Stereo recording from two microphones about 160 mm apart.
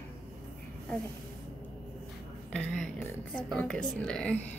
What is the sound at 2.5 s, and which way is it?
A woman's voice, 5° left (ahead or behind).